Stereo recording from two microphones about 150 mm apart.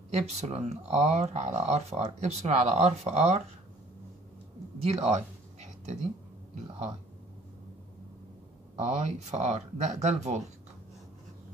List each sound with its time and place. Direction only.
0.1 s speech: 45° right (ahead or behind)
4.8 s a sound: 45° right (ahead or behind)
8.7 s speech: 50° right (ahead or behind)